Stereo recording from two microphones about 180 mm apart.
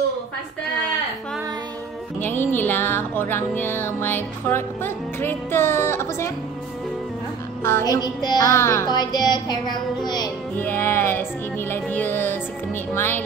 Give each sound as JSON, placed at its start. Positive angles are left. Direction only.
{"t": 2.1, "sound": "music", "side_deg": 10}
{"t": 7.6, "sound": "music", "side_deg": 15}